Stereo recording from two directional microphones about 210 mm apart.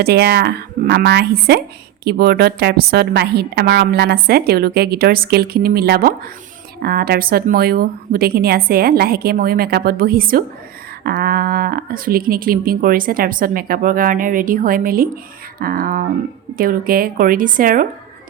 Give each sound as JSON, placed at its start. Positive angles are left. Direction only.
{"t": 0.0, "sound": "a woman's voice", "side_deg": -50}